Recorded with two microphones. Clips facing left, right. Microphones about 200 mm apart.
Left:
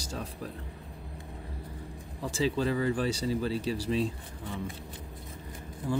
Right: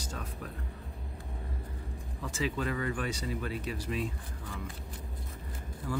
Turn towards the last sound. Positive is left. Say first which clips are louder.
# left 4 dB
turn(degrees=25)  # may be behind; listen again after turning